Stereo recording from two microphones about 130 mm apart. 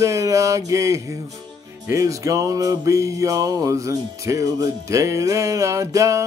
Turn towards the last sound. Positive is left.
turn(degrees=-25)  # may be behind; listen again after turning